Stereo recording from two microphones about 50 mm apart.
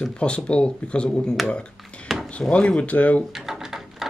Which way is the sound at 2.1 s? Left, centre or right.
Centre.